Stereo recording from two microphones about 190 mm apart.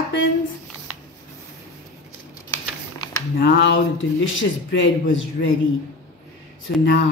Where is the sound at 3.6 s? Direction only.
80° left.